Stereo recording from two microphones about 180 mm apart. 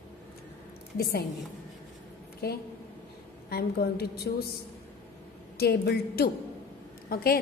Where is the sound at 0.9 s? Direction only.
60° left (ahead or behind).